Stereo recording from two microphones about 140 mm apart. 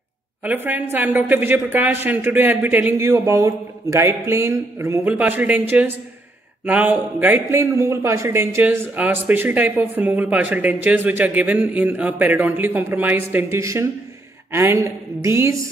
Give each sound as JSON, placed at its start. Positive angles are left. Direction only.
{"t": 0.4, "sound": "a man's voice", "side_deg": -10}